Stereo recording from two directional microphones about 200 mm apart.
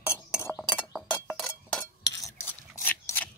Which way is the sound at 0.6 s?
Centre (ahead or behind).